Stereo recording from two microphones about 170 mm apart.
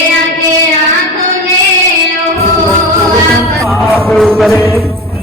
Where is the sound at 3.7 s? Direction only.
Centre (ahead or behind).